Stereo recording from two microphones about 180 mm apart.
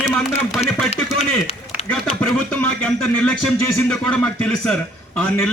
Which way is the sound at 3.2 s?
10° left (ahead or behind).